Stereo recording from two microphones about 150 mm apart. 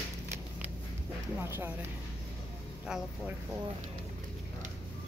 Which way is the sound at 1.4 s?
15° right (ahead or behind).